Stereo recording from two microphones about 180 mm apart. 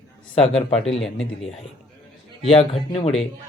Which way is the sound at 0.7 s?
35° left (ahead or behind).